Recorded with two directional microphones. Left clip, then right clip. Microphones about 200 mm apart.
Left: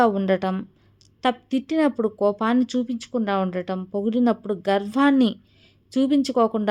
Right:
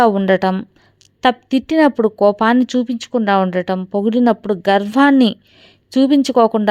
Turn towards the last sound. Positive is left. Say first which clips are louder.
# right 8 dB
turn(degrees=-25)  # may be behind; listen again after turning